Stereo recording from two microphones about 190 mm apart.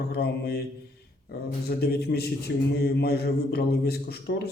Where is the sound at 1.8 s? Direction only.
60° left (ahead or behind).